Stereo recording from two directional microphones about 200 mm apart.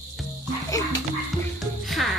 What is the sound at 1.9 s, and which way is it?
Music, centre (ahead or behind).